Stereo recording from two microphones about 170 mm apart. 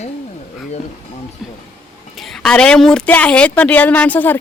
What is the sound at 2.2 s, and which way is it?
A woman's voice, 5° left (ahead or behind).